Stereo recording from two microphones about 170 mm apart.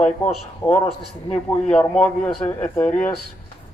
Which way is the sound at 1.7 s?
5° left (ahead or behind).